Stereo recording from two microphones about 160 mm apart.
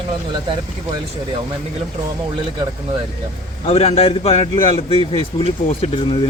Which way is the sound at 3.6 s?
40° left (ahead or behind).